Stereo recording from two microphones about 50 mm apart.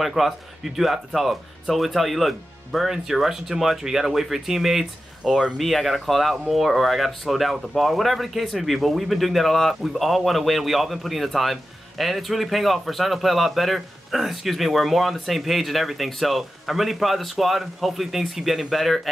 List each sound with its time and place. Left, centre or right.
0.0 s a man's voice: centre
5.6 s a man's voice: centre